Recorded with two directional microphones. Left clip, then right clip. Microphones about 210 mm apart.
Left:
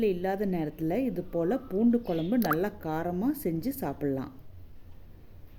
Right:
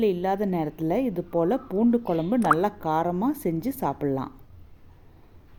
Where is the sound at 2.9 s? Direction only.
10° right (ahead or behind).